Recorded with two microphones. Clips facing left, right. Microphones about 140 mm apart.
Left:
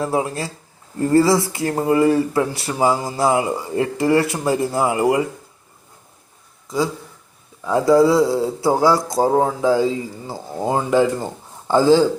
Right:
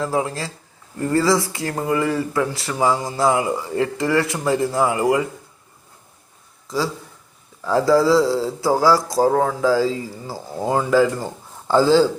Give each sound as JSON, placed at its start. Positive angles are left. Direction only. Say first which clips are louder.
{"t": 0.0, "sound": "speech", "louder": "left 1 dB", "side_deg": 25}
{"t": 6.7, "sound": "a man's voice", "louder": "left 2 dB", "side_deg": 20}